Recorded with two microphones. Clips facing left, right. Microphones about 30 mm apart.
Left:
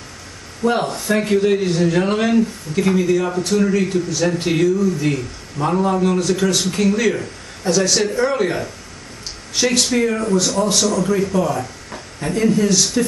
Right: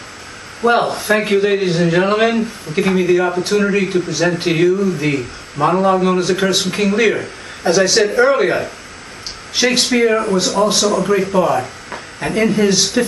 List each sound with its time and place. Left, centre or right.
0.6 s a man's voice: right